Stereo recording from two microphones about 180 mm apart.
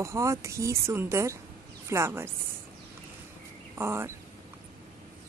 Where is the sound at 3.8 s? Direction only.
15° right (ahead or behind).